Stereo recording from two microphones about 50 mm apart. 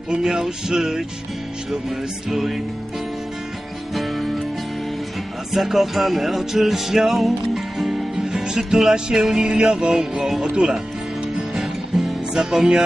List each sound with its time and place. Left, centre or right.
0.1 s music: centre
2.2 s music: centre
3.9 s music: centre
5.5 s music: centre
10.4 s speech: centre
12.0 s music: centre